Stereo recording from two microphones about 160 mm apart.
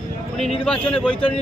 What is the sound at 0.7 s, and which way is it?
Speech, 5° left (ahead or behind).